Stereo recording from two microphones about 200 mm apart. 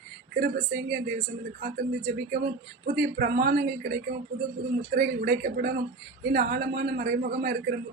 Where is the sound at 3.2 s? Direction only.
45° right (ahead or behind).